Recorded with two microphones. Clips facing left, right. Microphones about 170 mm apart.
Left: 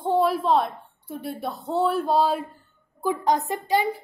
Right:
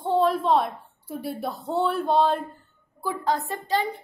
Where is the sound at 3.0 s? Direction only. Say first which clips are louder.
Left 3 dB; 20° left (ahead or behind).